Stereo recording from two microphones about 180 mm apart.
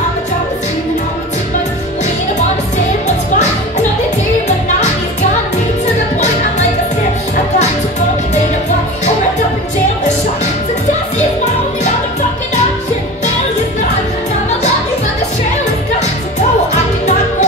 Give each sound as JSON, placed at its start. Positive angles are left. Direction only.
{"t": 16.7, "sound": "music", "side_deg": 40}